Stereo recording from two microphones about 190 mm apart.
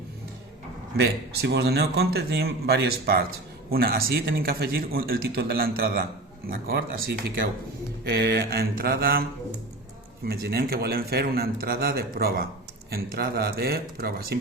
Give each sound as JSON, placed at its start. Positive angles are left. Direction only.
{"t": 0.9, "sound": "a man's voice", "side_deg": -60}
{"t": 8.0, "sound": "speech", "side_deg": -60}
{"t": 10.2, "sound": "speech", "side_deg": -55}